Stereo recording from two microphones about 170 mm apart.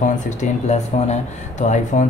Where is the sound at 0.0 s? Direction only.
45° left (ahead or behind).